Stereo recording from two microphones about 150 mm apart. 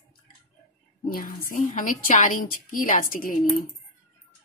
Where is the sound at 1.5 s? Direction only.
65° left (ahead or behind).